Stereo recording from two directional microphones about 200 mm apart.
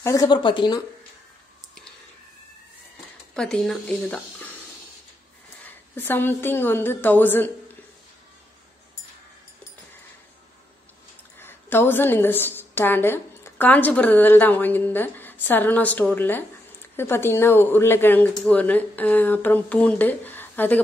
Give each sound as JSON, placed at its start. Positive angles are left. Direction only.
{"t": 0.0, "sound": "speech", "side_deg": 15}
{"t": 3.3, "sound": "speech", "side_deg": 5}
{"t": 5.9, "sound": "speech", "side_deg": 10}
{"t": 11.3, "sound": "a woman's voice", "side_deg": 10}